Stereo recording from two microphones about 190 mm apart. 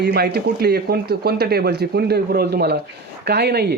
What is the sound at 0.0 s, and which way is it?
Speech, 60° right (ahead or behind).